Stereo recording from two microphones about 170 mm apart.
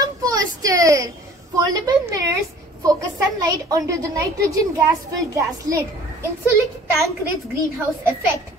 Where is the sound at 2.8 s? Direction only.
20° right (ahead or behind).